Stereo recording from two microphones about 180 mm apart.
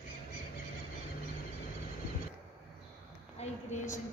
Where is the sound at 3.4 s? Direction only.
45° left (ahead or behind).